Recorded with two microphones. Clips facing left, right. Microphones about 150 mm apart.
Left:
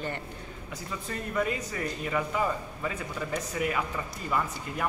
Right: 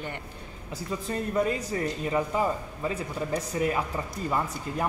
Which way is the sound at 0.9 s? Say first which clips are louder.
Right 5 dB; 30° right (ahead or behind).